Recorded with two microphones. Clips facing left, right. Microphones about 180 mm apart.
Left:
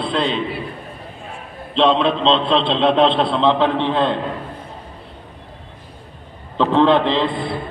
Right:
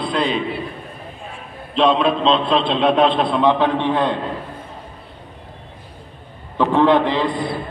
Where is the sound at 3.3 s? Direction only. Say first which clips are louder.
Even; 15° right (ahead or behind).